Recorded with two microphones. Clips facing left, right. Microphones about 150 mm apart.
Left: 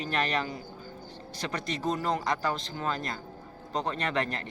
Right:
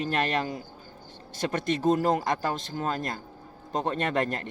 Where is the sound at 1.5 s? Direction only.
50° right (ahead or behind).